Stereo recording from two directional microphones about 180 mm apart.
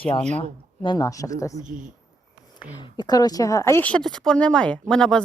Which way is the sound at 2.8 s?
25° left (ahead or behind).